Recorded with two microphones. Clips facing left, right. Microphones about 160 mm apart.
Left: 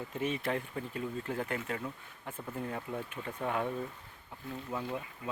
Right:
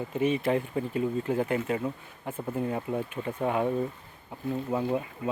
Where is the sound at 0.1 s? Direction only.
10° right (ahead or behind).